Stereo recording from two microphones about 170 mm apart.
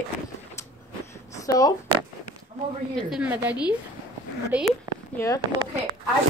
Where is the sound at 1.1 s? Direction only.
20° left (ahead or behind).